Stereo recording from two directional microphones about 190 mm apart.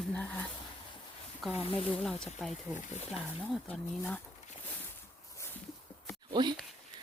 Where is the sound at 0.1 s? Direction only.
10° left (ahead or behind).